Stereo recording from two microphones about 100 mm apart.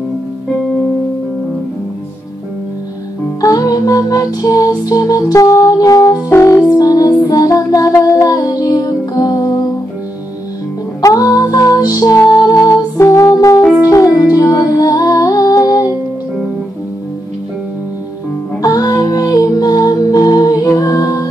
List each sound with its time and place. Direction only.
3.3 s music: 35° left (ahead or behind)
11.0 s music: 35° left (ahead or behind)
18.6 s music: 40° left (ahead or behind)